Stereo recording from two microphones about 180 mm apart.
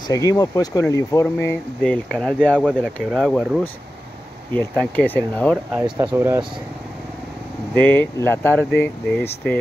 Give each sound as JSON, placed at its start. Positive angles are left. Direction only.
{"t": 0.1, "sound": "speech", "side_deg": 20}
{"t": 5.7, "sound": "speech", "side_deg": -10}
{"t": 7.7, "sound": "speech", "side_deg": 10}